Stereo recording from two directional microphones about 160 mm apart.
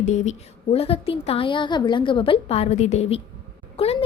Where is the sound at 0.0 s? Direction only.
45° left (ahead or behind).